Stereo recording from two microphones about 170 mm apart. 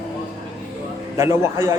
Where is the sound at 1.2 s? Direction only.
15° right (ahead or behind).